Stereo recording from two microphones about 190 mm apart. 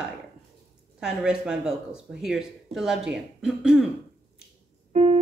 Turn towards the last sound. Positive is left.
turn(degrees=-35)  # may be behind; listen again after turning